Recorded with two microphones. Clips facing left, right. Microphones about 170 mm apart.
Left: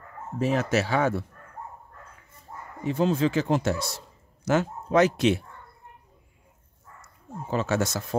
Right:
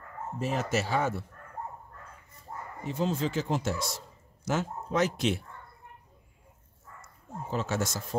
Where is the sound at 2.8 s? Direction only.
65° left (ahead or behind).